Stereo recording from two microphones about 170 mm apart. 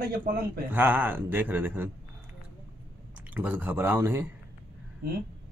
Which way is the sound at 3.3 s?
10° right (ahead or behind).